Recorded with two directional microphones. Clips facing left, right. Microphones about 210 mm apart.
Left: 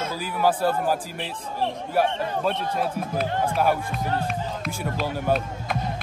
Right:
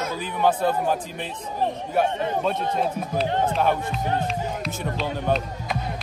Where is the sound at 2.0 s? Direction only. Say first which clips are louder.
Right 1 dB; 5° left (ahead or behind).